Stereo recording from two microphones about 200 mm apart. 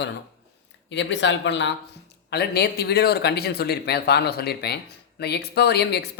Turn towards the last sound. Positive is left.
turn(degrees=55)  # may be behind; listen again after turning